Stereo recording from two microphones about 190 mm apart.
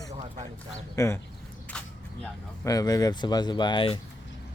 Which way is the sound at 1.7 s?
5° left (ahead or behind).